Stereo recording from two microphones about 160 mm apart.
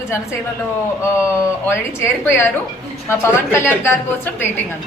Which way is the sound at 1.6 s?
15° left (ahead or behind).